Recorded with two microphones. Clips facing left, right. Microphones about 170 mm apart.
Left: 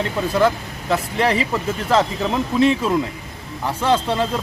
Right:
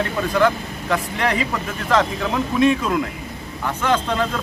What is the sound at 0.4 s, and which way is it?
Speech, 30° left (ahead or behind).